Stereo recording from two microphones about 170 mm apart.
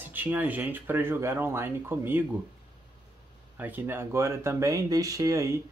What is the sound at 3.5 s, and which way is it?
Speech, 10° right (ahead or behind).